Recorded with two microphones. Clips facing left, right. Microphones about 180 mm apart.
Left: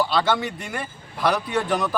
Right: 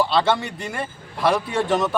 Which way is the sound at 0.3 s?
Centre (ahead or behind).